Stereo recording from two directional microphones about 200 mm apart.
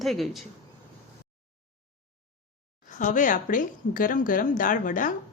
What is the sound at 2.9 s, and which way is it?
Speech, 40° left (ahead or behind).